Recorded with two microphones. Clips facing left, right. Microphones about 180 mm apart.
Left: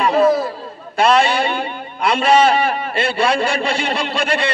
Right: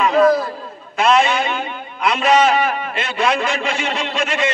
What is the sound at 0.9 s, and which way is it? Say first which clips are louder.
A man's voice: left 1 dB; 35° left (ahead or behind).